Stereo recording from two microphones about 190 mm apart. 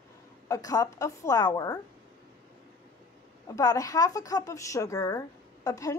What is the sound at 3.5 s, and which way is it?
A woman's voice, 20° left (ahead or behind).